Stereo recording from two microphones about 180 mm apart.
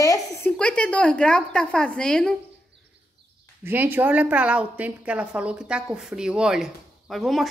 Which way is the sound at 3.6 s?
10° right (ahead or behind).